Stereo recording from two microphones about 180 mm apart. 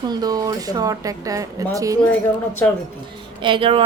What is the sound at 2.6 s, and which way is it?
Speech, 10° left (ahead or behind).